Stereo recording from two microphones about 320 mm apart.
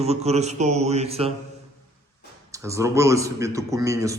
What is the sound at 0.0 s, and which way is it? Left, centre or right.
Speech, centre.